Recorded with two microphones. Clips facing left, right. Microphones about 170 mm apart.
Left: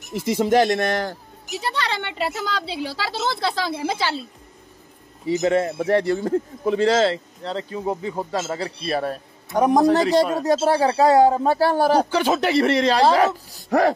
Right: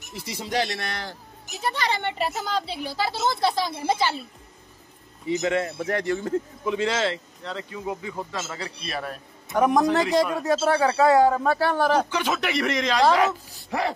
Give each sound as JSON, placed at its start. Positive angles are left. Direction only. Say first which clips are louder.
{"t": 0.1, "sound": "speech", "louder": "left 11 dB", "side_deg": 50}
{"t": 1.6, "sound": "speech", "louder": "even", "side_deg": 70}
{"t": 2.7, "sound": "a woman's voice", "louder": "left 1 dB", "side_deg": 90}
{"t": 5.2, "sound": "a man's voice", "louder": "left 5 dB", "side_deg": 35}